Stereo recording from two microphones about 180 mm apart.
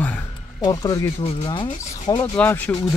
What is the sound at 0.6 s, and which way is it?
Speech, 20° left (ahead or behind).